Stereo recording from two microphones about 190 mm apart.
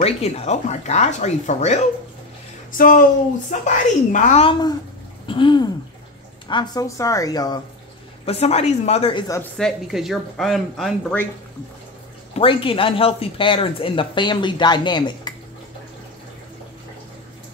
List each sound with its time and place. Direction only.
0.0 s speech: 35° left (ahead or behind)
2.7 s speech: 45° left (ahead or behind)
4.5 s speech: 20° left (ahead or behind)
8.3 s speech: 35° left (ahead or behind)
9.3 s speech: 5° left (ahead or behind)
12.4 s speech: 30° left (ahead or behind)